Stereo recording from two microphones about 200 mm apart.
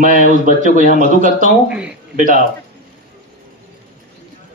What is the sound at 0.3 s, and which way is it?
A man's voice, 40° right (ahead or behind).